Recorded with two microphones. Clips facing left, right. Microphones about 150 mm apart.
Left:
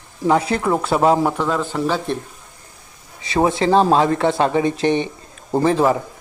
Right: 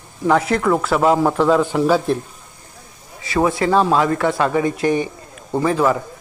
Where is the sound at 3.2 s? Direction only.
25° left (ahead or behind).